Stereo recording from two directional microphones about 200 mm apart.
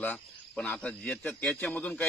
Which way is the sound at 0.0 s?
5° left (ahead or behind).